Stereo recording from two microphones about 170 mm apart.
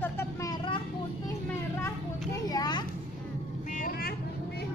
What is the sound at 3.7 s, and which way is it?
Vehicle, 55° left (ahead or behind).